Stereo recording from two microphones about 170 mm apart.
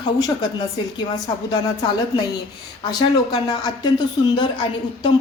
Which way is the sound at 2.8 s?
25° left (ahead or behind).